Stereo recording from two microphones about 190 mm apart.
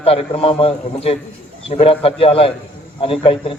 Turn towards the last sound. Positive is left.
turn(degrees=30)  # may be behind; listen again after turning